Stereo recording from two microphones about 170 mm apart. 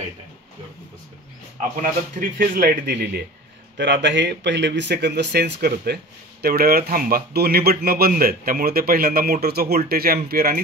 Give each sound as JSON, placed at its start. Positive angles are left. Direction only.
{"t": 1.8, "sound": "a man's voice", "side_deg": -55}
{"t": 3.7, "sound": "speech", "side_deg": -85}
{"t": 6.4, "sound": "a man's voice", "side_deg": -65}